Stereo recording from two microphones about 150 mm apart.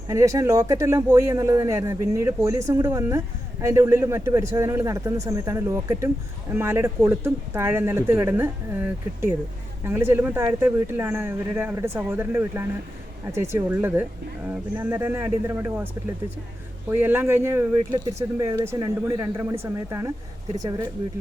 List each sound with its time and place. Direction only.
0.1 s speech: 20° right (ahead or behind)
9.8 s speech: 15° right (ahead or behind)
16.9 s speech: 15° right (ahead or behind)